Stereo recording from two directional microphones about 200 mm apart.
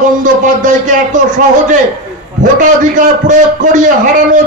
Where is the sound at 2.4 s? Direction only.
40° right (ahead or behind).